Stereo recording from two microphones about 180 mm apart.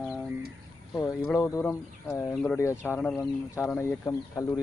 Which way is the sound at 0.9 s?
10° left (ahead or behind).